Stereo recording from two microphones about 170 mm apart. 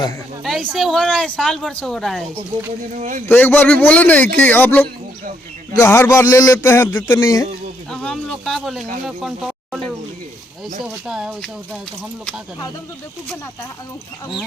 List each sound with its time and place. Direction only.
0.4 s speech: centre (ahead or behind)
2.9 s speech: 50° right (ahead or behind)
3.2 s a man's voice: 10° left (ahead or behind)
7.9 s speech: 5° left (ahead or behind)